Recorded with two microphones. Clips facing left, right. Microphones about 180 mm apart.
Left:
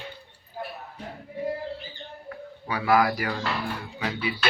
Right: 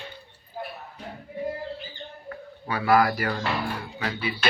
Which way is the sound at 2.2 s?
10° left (ahead or behind).